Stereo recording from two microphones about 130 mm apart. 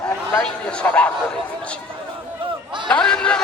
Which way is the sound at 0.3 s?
10° left (ahead or behind).